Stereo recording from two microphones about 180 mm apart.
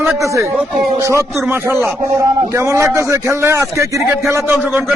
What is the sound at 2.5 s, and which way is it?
A man's voice, 15° right (ahead or behind).